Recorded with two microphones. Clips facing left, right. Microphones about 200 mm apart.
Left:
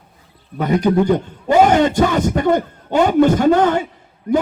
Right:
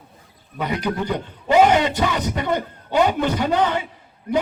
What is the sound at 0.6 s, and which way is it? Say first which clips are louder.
A man's voice: left 9 dB; 45° left (ahead or behind).